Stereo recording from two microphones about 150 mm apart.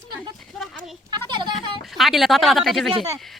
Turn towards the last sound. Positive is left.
turn(degrees=0)  # may be behind; listen again after turning